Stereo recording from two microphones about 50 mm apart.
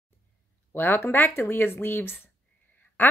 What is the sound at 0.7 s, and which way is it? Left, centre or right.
A woman's voice, left.